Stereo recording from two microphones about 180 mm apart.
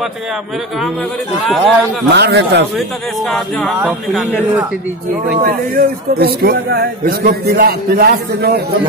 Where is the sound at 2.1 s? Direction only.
65° right (ahead or behind).